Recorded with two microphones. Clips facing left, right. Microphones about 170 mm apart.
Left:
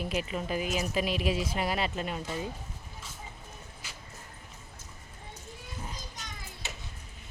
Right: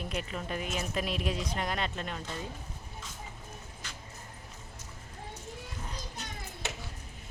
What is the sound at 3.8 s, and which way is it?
Vehicle, 10° left (ahead or behind).